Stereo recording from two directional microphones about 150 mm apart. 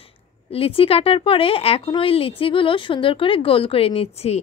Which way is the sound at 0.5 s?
40° left (ahead or behind).